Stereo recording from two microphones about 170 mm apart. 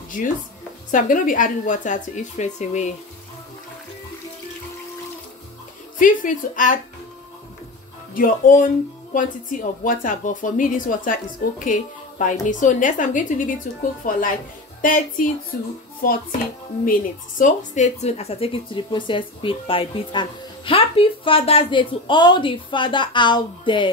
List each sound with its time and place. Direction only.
0.9 s speech: 50° left (ahead or behind)
5.9 s speech: 50° left (ahead or behind)
8.1 s speech: 55° left (ahead or behind)
17.4 s speech: 45° left (ahead or behind); by 23.9 s 30° left (ahead or behind)